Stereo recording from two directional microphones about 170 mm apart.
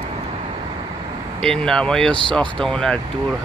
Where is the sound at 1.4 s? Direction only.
5° left (ahead or behind).